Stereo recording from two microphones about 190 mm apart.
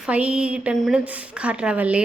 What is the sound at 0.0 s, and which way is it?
A woman's voice, 5° right (ahead or behind).